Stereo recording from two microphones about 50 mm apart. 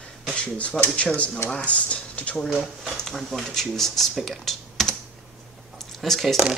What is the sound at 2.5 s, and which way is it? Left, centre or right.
Speech, centre.